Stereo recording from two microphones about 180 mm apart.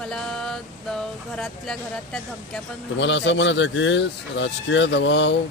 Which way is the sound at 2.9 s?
90° left.